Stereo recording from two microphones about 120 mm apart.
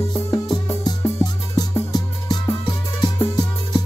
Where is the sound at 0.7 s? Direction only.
25° left (ahead or behind).